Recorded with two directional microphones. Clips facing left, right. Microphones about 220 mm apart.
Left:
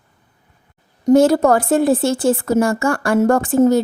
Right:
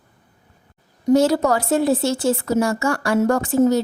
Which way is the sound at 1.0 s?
50° left (ahead or behind).